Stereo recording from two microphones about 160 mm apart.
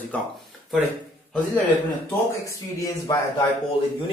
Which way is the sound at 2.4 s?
20° left (ahead or behind).